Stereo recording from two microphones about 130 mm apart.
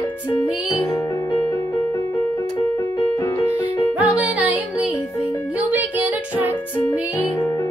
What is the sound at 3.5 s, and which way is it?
Music, 10° right (ahead or behind).